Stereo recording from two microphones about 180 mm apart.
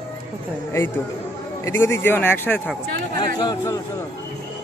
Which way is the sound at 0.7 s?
10° left (ahead or behind).